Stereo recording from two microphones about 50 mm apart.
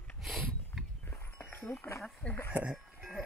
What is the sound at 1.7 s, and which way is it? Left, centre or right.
Speech, left.